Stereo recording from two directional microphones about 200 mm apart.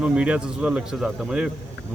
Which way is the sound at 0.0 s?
5° right (ahead or behind).